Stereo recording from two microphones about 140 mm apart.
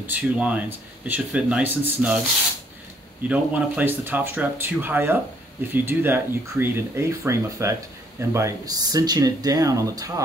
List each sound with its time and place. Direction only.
0.0 s speech: 10° right (ahead or behind)
3.3 s speech: 10° right (ahead or behind)